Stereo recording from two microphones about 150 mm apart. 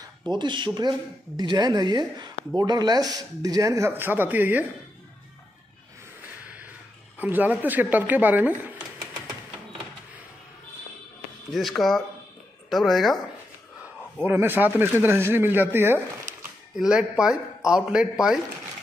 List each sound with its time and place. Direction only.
0.3 s speech: 30° right (ahead or behind); by 4.6 s 10° right (ahead or behind)
6.4 s a sound: 10° right (ahead or behind)
7.2 s speech: 10° right (ahead or behind)
11.5 s a woman's voice: centre (ahead or behind)
14.2 s speech: 15° right (ahead or behind)
16.7 s speech: 5° right (ahead or behind)